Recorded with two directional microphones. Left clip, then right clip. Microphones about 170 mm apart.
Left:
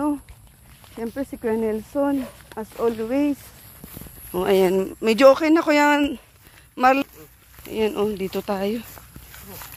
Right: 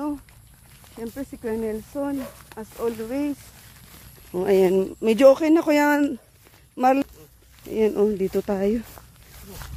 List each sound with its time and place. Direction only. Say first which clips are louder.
0.9 s speech: left 5 dB; 65° left (ahead or behind)
4.4 s speech: even; 10° right (ahead or behind)
4.8 s speech: left 2 dB; 25° right (ahead or behind)
7.7 s speech: right 2 dB; 40° right (ahead or behind)